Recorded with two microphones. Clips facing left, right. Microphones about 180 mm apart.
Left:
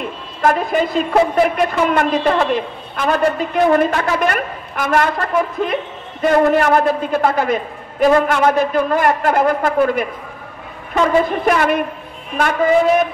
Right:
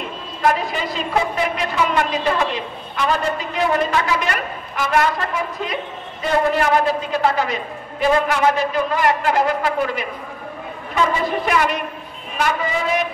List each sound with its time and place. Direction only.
0.4 s a woman's voice: 50° left (ahead or behind)
11.2 s a woman's voice: 50° left (ahead or behind)